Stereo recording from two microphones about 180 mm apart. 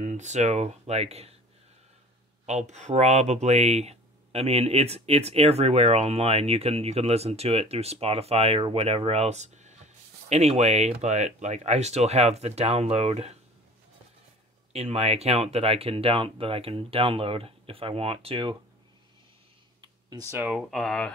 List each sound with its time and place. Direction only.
0.0 s speech: 40° right (ahead or behind)
2.4 s speech: 40° right (ahead or behind)
14.7 s speech: 35° right (ahead or behind)
19.8 s speech: 20° right (ahead or behind); by 21.1 s centre (ahead or behind)